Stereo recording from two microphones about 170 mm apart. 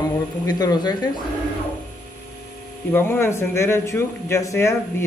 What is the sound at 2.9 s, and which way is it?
Speech, 15° left (ahead or behind).